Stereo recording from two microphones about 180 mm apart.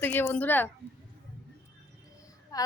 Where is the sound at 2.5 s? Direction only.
20° left (ahead or behind).